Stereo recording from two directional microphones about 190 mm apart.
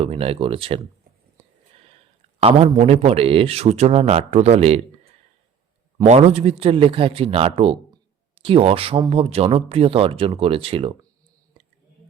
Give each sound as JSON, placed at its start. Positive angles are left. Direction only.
{"t": 0.0, "sound": "a man's voice", "side_deg": -30}
{"t": 2.4, "sound": "a man's voice", "side_deg": -30}
{"t": 6.1, "sound": "a man's voice", "side_deg": -35}